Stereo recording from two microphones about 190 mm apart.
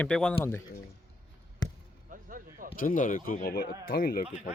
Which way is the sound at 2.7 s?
45° left (ahead or behind).